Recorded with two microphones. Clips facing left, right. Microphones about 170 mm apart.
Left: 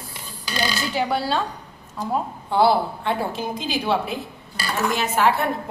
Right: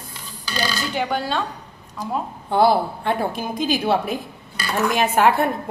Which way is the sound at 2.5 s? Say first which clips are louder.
Right 1 dB; 50° right (ahead or behind).